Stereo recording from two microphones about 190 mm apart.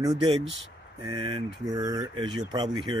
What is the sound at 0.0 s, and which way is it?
Speech, 25° right (ahead or behind).